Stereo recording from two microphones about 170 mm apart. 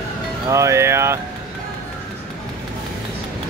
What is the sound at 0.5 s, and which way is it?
Speech, 15° right (ahead or behind).